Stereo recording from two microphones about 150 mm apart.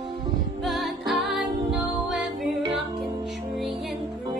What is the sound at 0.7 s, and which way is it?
Music, centre (ahead or behind).